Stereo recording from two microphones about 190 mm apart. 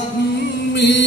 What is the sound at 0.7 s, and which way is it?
Chant, 65° left (ahead or behind).